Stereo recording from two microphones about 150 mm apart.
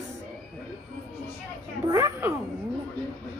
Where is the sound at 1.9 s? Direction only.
20° right (ahead or behind).